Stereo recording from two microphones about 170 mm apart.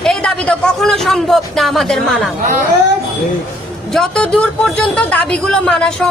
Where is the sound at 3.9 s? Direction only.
5° left (ahead or behind).